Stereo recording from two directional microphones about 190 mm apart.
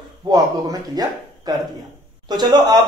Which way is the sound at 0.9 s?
20° right (ahead or behind).